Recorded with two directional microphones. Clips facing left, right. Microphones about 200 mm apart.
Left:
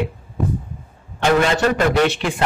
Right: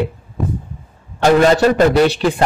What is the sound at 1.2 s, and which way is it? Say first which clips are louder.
A man's voice: right 5 dB; 40° right (ahead or behind).